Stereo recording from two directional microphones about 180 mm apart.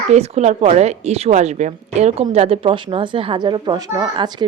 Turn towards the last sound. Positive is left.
turn(degrees=-25)  # may be behind; listen again after turning